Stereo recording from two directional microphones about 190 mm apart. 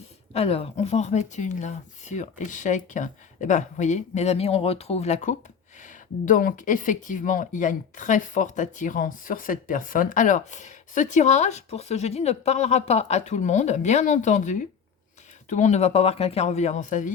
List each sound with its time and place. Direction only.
0.3 s speech: 30° left (ahead or behind)